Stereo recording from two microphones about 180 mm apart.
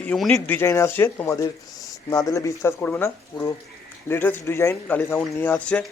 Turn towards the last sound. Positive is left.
turn(degrees=5)  # may be behind; listen again after turning